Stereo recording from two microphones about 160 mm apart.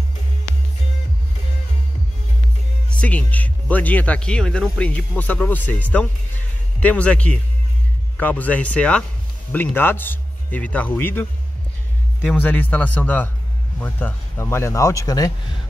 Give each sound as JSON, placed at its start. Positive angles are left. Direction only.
{"t": 3.0, "sound": "speech", "side_deg": 10}